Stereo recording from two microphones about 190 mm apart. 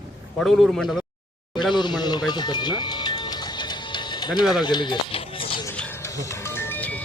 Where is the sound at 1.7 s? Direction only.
25° left (ahead or behind).